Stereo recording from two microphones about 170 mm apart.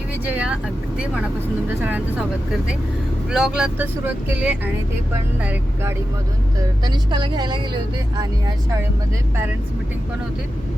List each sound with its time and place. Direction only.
0.3 s speech: 5° right (ahead or behind)
3.2 s speech: 5° right (ahead or behind)
6.8 s a woman's voice: 25° right (ahead or behind)